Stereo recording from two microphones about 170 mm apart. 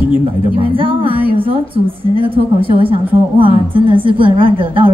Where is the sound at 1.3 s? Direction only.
30° right (ahead or behind).